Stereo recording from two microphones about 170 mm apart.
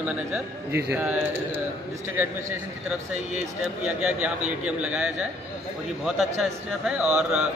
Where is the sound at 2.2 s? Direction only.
15° right (ahead or behind).